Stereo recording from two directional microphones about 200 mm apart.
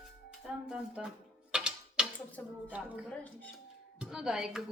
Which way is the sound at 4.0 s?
5° right (ahead or behind).